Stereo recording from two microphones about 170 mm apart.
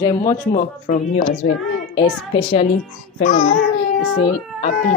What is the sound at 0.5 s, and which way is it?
Speech, 50° left (ahead or behind).